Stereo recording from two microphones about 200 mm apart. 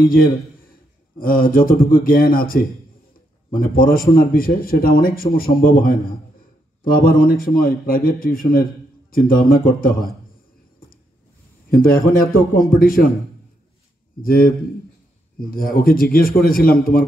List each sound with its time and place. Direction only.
1.2 s a man's voice: 45° left (ahead or behind)
11.7 s a man's voice: 45° left (ahead or behind)
14.2 s a man's voice: 45° left (ahead or behind)